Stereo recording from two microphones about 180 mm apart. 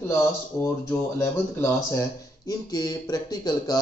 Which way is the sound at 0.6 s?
15° left (ahead or behind).